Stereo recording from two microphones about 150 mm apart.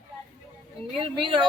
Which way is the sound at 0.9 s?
35° right (ahead or behind).